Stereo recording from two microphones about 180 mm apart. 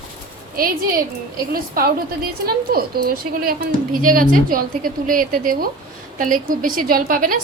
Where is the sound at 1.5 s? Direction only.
55° right (ahead or behind).